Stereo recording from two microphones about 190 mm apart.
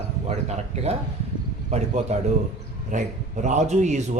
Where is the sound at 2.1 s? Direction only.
35° right (ahead or behind).